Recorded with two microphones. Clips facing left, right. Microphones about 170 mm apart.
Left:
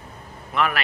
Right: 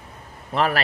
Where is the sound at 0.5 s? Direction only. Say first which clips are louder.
Right 2 dB; 35° right (ahead or behind).